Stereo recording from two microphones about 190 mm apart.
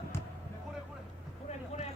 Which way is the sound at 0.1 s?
15° left (ahead or behind).